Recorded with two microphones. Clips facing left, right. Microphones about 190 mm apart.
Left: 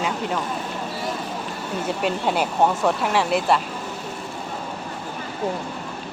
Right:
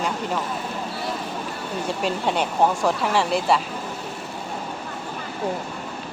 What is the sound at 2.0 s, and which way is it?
Speech, centre (ahead or behind).